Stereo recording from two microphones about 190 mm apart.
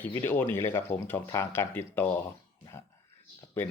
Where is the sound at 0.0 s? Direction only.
10° left (ahead or behind).